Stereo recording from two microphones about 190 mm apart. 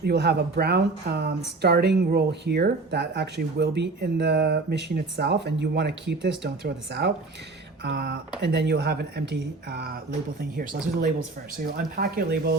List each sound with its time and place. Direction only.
0.0 s speech: 60° right (ahead or behind)
11.6 s speech: 50° right (ahead or behind)